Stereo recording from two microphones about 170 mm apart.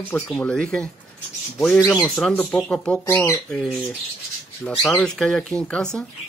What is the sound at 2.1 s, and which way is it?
Speech, 5° left (ahead or behind).